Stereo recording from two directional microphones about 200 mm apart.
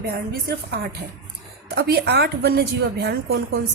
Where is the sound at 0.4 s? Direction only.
50° right (ahead or behind).